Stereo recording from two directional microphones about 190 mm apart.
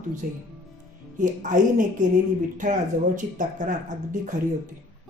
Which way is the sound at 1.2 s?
40° right (ahead or behind).